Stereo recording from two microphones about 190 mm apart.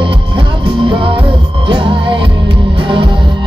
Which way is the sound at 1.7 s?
25° right (ahead or behind).